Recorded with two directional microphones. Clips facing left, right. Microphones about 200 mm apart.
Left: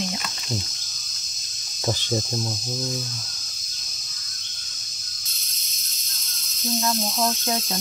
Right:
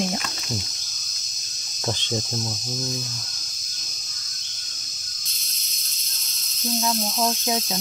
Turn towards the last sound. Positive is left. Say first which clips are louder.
# right 1 dB
turn(degrees=-5)  # may be behind; listen again after turning